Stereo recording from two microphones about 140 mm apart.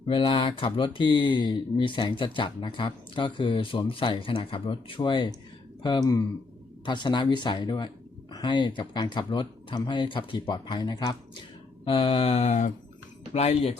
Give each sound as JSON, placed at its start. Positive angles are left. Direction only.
{"t": 0.0, "sound": "speech", "side_deg": 35}
{"t": 11.9, "sound": "mantra", "side_deg": 40}
{"t": 13.3, "sound": "mantra", "side_deg": 45}